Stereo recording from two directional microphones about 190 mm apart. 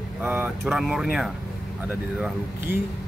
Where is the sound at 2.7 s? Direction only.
10° right (ahead or behind).